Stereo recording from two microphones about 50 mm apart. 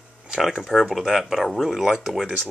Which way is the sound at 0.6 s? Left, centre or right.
Centre.